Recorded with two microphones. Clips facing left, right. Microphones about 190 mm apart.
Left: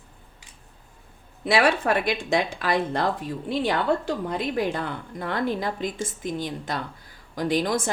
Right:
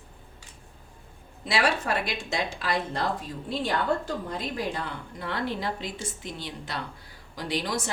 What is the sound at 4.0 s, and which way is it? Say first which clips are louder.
Speech: left 5 dB; 65° left (ahead or behind).